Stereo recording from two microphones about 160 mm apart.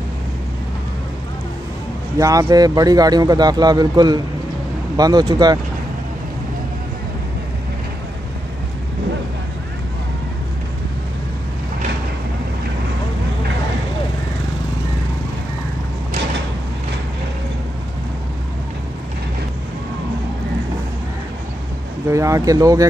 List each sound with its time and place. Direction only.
2.1 s speech: 20° right (ahead or behind)
22.0 s speech: 20° right (ahead or behind)